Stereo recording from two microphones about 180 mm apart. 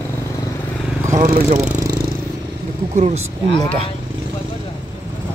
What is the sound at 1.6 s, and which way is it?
Vehicle, 15° right (ahead or behind).